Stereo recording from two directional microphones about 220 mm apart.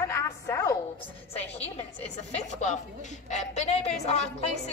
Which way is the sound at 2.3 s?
35° left (ahead or behind).